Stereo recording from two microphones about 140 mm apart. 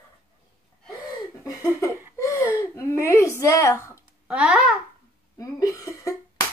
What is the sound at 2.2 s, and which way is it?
Speech, 20° left (ahead or behind).